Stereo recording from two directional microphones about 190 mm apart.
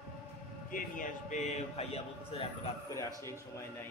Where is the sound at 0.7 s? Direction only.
45° left (ahead or behind).